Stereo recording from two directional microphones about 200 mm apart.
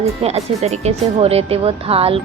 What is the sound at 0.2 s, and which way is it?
Speech, 30° right (ahead or behind).